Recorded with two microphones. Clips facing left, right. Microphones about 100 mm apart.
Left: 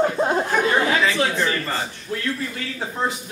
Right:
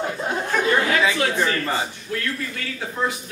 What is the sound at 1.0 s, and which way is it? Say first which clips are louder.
Speech: even; 10° right (ahead or behind).